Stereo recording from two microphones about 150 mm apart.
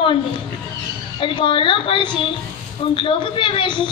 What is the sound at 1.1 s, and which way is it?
A woman's voice, 35° left (ahead or behind).